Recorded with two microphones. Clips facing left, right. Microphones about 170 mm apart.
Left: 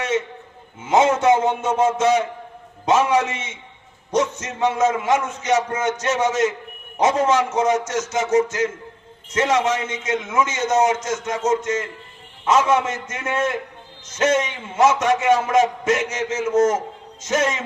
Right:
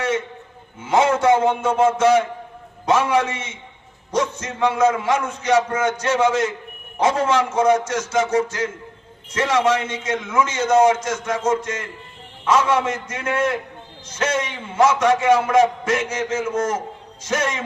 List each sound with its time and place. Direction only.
0.9 s a man's voice: 20° left (ahead or behind)